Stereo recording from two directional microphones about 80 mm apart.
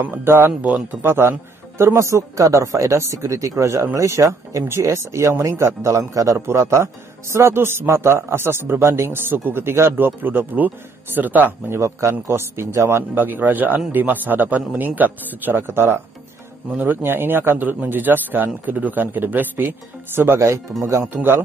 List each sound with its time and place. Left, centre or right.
0.0 s a man's voice: right
0.6 s a man's voice: centre
1.0 s a man's voice: right
11.8 s a man's voice: right
13.1 s a man's voice: right
20.2 s a man's voice: right